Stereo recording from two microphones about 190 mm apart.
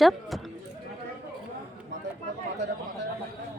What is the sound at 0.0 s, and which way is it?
Speech, centre (ahead or behind).